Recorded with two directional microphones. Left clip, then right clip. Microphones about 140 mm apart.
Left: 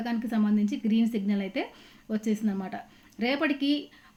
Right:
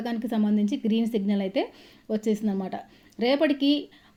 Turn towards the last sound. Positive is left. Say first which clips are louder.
# right 4 dB
turn(degrees=-20)  # may be behind; listen again after turning